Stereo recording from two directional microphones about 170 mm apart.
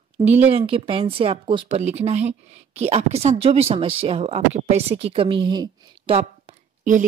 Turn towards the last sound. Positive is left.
turn(degrees=-45)  # may be behind; listen again after turning